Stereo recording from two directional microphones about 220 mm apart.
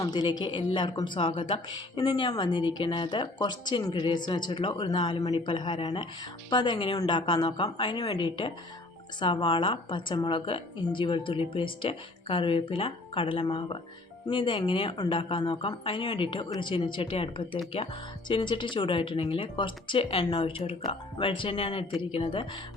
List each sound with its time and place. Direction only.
0.0 s speech: 20° left (ahead or behind)